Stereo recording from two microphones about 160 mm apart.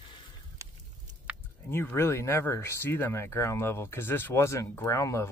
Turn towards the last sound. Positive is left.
turn(degrees=20)  # may be behind; listen again after turning